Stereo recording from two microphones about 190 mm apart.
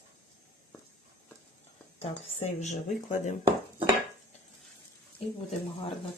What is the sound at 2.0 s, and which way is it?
Speech, 40° left (ahead or behind).